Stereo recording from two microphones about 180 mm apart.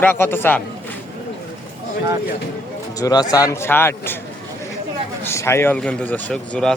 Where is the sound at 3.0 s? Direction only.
20° left (ahead or behind).